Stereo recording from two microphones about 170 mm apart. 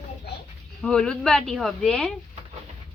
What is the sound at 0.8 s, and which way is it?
Speech, 5° left (ahead or behind).